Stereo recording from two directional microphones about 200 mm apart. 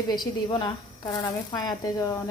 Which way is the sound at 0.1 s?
20° left (ahead or behind).